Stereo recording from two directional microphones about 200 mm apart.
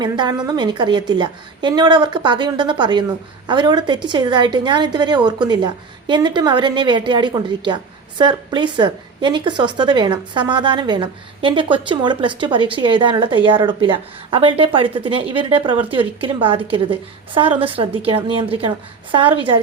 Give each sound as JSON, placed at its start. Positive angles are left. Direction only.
{"t": 0.0, "sound": "a woman's voice", "side_deg": -20}